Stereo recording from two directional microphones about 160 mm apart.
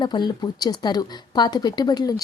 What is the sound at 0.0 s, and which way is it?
Speech, 25° left (ahead or behind).